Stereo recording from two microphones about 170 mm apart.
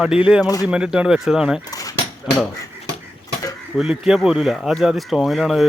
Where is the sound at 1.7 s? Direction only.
20° left (ahead or behind).